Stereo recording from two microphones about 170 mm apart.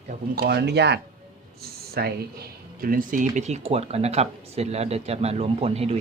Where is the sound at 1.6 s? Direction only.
65° right (ahead or behind); by 6.0 s 35° right (ahead or behind).